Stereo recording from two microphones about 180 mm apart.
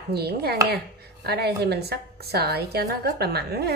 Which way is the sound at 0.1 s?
60° right (ahead or behind).